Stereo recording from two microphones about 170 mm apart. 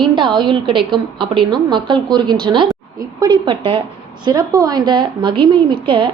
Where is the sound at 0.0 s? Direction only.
30° right (ahead or behind).